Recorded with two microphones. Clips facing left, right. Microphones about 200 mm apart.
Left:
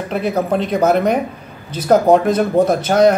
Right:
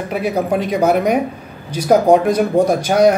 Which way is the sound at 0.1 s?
10° right (ahead or behind).